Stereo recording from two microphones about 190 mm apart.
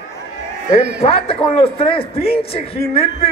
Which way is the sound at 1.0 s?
30° left (ahead or behind).